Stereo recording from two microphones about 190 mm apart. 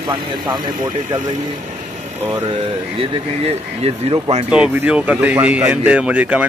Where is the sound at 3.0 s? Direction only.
30° right (ahead or behind).